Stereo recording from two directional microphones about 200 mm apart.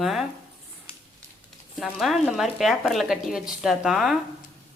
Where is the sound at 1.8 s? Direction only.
Centre (ahead or behind).